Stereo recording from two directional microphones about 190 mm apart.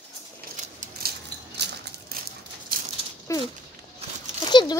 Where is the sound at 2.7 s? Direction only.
50° right (ahead or behind).